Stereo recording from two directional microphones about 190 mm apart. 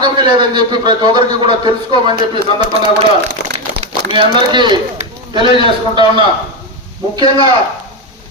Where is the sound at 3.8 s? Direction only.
30° right (ahead or behind).